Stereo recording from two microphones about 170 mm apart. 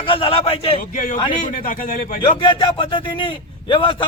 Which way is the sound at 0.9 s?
55° left (ahead or behind).